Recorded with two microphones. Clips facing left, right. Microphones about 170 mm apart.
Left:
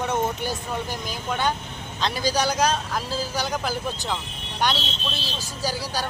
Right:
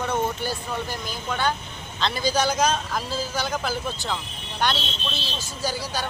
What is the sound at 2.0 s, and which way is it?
Speech, 10° left (ahead or behind).